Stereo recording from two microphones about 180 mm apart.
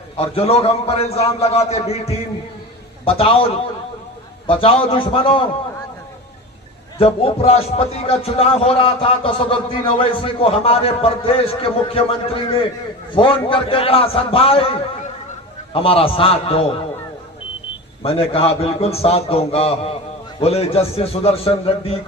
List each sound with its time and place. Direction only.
0.2 s a man's voice: 35° left (ahead or behind)
7.0 s a man's voice: 35° left (ahead or behind)
18.0 s a man's voice: 35° left (ahead or behind)